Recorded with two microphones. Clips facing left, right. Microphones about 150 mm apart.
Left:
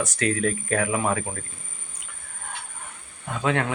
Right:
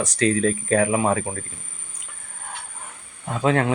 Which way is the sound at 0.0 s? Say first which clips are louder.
Right 4 dB; 35° right (ahead or behind).